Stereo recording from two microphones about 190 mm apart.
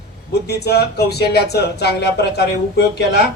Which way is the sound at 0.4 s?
60° left (ahead or behind).